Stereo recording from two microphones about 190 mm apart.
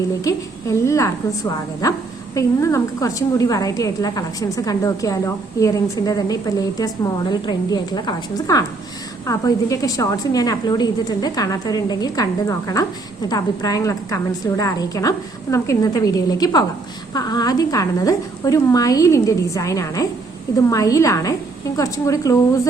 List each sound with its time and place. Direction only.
0.3 s a woman's voice: 15° left (ahead or behind)